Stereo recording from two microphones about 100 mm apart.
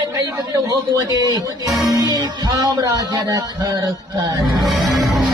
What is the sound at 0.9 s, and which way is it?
Speech, 35° right (ahead or behind).